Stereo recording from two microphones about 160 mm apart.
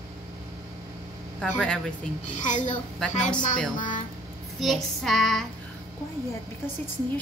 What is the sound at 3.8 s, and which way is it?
Speech, 55° left (ahead or behind).